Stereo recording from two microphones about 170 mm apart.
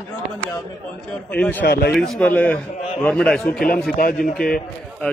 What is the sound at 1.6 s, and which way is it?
Speech, 70° left (ahead or behind).